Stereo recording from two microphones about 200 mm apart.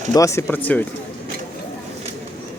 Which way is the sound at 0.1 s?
15° left (ahead or behind).